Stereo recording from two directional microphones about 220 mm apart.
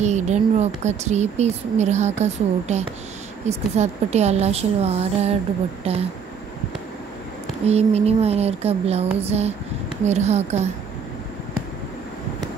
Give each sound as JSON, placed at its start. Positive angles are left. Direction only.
{"t": 0.0, "sound": "speech", "side_deg": -30}
{"t": 7.6, "sound": "speech", "side_deg": -30}